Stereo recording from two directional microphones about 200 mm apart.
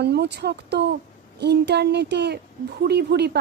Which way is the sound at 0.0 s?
55° right (ahead or behind).